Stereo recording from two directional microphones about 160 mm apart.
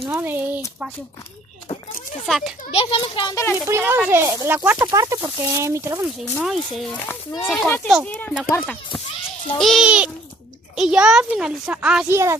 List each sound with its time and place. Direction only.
0.1 s speech: 15° right (ahead or behind)
2.2 s a child's voice: centre (ahead or behind)
2.7 s a child's voice: 35° left (ahead or behind)
3.7 s speech: 15° right (ahead or behind)
4.8 s speech: 20° right (ahead or behind)
6.4 s a child's voice: centre (ahead or behind)
12.1 s speech: 15° right (ahead or behind)